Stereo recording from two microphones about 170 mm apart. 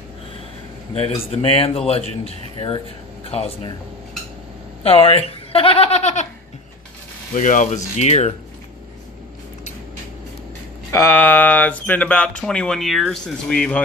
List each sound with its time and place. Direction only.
0.9 s speech: 35° left (ahead or behind)
4.8 s speech: 35° left (ahead or behind)
7.3 s speech: 45° left (ahead or behind)
10.9 s speech: 15° left (ahead or behind)